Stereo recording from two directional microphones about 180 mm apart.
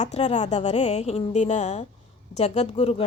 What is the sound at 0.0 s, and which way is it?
A woman's voice, 35° left (ahead or behind).